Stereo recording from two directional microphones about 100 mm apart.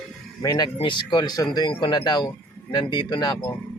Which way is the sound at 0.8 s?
55° left (ahead or behind).